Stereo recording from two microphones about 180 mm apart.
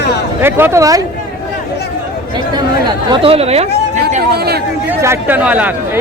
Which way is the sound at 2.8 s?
25° right (ahead or behind).